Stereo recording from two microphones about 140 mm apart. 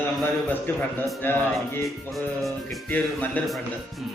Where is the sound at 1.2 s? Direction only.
15° left (ahead or behind).